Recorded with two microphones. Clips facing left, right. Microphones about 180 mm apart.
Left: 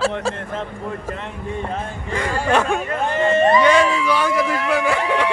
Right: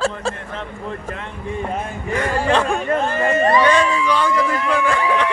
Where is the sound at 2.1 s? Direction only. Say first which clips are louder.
Right 1 dB; 10° left (ahead or behind).